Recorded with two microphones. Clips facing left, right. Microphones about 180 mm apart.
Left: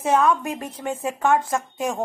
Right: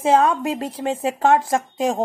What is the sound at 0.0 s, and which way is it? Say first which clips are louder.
Speech: right 3 dB; 30° right (ahead or behind).